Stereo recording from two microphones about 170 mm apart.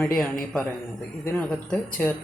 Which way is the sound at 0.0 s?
5° left (ahead or behind).